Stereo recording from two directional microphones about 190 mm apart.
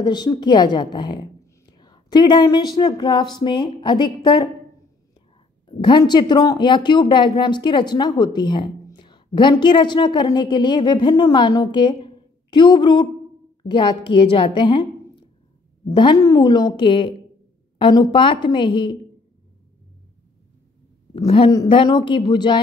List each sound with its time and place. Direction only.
0.0 s speech: 20° left (ahead or behind)
5.7 s a woman's voice: 25° left (ahead or behind)
21.5 s speech: 20° left (ahead or behind)